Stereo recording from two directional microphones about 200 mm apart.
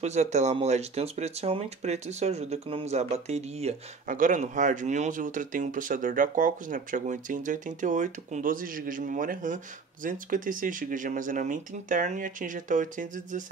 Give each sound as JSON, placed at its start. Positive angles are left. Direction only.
{"t": 0.0, "sound": "speech", "side_deg": -35}